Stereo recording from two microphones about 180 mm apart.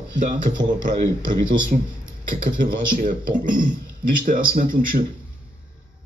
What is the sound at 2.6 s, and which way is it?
Speech, 50° right (ahead or behind).